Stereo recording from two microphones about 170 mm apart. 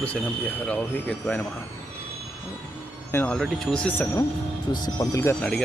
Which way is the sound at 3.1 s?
10° left (ahead or behind).